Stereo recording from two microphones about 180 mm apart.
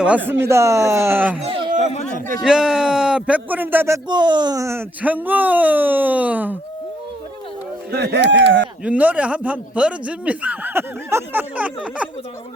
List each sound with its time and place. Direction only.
0.4 s speech: 15° right (ahead or behind)
1.4 s a sound: 30° right (ahead or behind)
1.9 s a sound: 40° left (ahead or behind)
2.4 s speech: 5° right (ahead or behind)
7.9 s speech: 65° right (ahead or behind); by 8.6 s 85° right
8.8 s speech: 10° right (ahead or behind)